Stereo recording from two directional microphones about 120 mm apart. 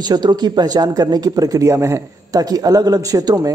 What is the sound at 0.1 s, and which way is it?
Speech, 35° right (ahead or behind).